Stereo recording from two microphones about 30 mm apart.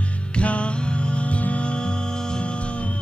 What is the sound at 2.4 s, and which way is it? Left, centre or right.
Music, left.